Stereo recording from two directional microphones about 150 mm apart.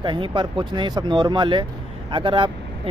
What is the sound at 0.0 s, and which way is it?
Speech, 30° right (ahead or behind).